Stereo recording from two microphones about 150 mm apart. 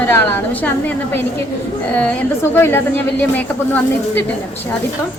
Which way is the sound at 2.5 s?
15° left (ahead or behind).